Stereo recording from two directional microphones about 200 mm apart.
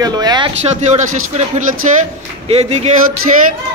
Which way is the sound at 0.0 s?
20° right (ahead or behind).